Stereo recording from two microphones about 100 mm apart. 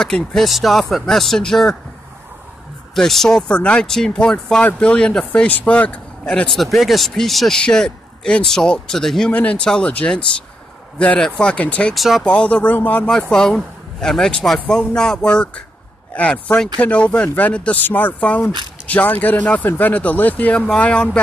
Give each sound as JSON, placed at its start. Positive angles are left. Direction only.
{"t": 0.0, "sound": "speech", "side_deg": 5}
{"t": 2.9, "sound": "speech", "side_deg": 0}
{"t": 11.9, "sound": "speech", "side_deg": 0}
{"t": 12.3, "sound": "speech", "side_deg": 10}